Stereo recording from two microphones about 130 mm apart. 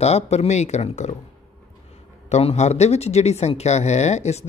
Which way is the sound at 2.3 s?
55° left (ahead or behind).